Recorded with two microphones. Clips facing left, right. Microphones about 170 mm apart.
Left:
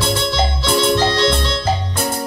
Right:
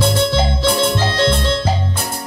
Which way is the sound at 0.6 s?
50° right (ahead or behind).